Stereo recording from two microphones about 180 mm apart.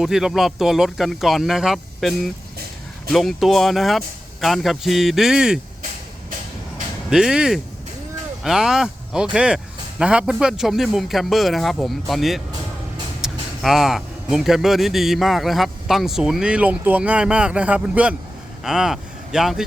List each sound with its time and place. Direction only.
0.0 s a man's voice: centre (ahead or behind)
7.1 s a man's voice: 5° right (ahead or behind)